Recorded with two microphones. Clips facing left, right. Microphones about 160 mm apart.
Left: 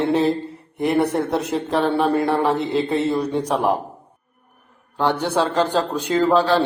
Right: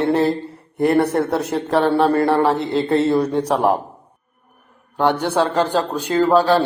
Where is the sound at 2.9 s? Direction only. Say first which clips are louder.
Right 8 dB; 65° right (ahead or behind).